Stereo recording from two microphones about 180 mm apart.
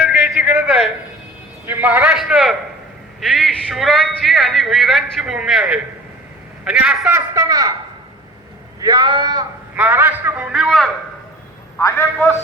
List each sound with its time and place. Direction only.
0.0 s a sound: 5° right (ahead or behind)
1.6 s a man's voice: 10° right (ahead or behind)
7.3 s speech: 20° right (ahead or behind)
8.8 s speech: 20° right (ahead or behind)
9.7 s a man's voice: 10° right (ahead or behind)
11.8 s a man's voice: 15° left (ahead or behind)